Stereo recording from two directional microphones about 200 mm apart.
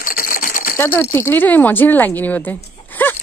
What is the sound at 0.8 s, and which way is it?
Speech, 10° left (ahead or behind).